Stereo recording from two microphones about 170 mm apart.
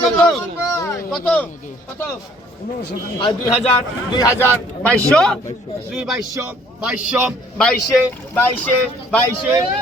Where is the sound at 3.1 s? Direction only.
30° left (ahead or behind).